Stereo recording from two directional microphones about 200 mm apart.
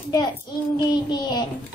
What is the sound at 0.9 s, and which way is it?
Child singing, 20° left (ahead or behind).